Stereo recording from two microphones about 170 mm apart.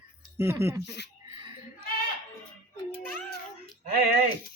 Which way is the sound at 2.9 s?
10° left (ahead or behind).